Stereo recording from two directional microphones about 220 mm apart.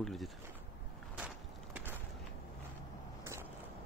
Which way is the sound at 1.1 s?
5° right (ahead or behind).